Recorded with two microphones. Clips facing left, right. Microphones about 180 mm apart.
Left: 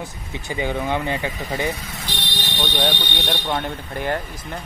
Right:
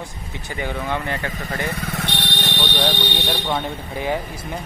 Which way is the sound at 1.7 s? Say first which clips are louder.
Right 3 dB; 60° right (ahead or behind).